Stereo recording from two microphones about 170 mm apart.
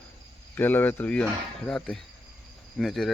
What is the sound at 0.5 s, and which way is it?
Speech, 10° left (ahead or behind).